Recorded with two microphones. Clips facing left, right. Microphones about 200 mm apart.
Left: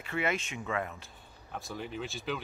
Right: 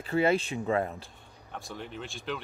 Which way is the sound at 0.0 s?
30° right (ahead or behind).